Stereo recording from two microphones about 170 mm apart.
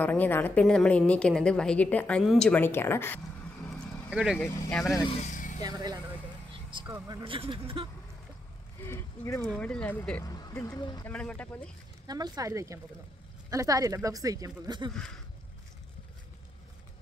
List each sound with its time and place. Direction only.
0.0 s a woman's voice: 10° left (ahead or behind)
3.7 s vehicle: 5° right (ahead or behind)
4.4 s speech: 5° left (ahead or behind)
4.9 s speech: 25° left (ahead or behind)
5.2 s vehicle: 45° left (ahead or behind)
5.6 s speech: 25° right (ahead or behind)
6.5 s vehicle: 30° right (ahead or behind)
6.9 s speech: 20° right (ahead or behind)
8.8 s a woman's voice: 15° left (ahead or behind)
10.2 s speech: 20° left (ahead or behind)
11.1 s a woman's voice: 5° left (ahead or behind)
12.1 s speech: 25° right (ahead or behind)